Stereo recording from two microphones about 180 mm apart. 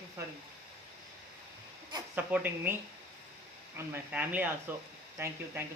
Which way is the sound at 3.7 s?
10° right (ahead or behind).